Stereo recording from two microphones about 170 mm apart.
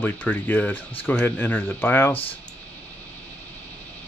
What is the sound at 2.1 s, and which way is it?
Speech, 35° left (ahead or behind).